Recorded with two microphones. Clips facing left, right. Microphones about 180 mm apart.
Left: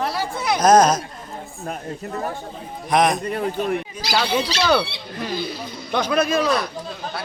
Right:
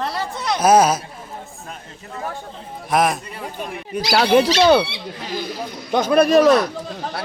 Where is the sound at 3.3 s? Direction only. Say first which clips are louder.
Left 7 dB; 55° left (ahead or behind).